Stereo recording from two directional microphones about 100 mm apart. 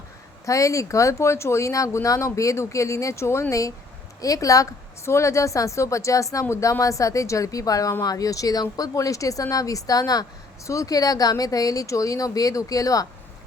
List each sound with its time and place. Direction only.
0.4 s speech: 35° left (ahead or behind)